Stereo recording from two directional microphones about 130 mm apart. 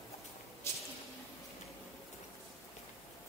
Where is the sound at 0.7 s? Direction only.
20° left (ahead or behind).